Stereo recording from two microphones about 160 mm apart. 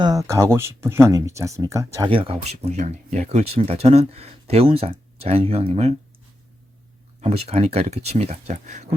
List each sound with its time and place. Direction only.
0.0 s speech: 20° right (ahead or behind)
2.0 s speech: 35° right (ahead or behind)
7.2 s speech: 40° right (ahead or behind)